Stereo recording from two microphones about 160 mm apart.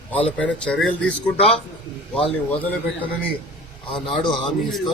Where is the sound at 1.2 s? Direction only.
40° left (ahead or behind).